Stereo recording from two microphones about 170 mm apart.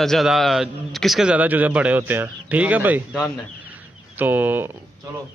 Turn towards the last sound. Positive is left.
turn(degrees=-10)  # may be behind; listen again after turning